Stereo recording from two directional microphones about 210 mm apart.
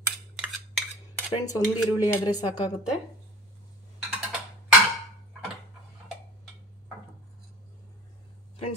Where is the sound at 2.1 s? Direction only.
20° left (ahead or behind).